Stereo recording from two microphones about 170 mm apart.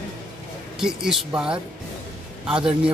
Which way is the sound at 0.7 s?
5° right (ahead or behind).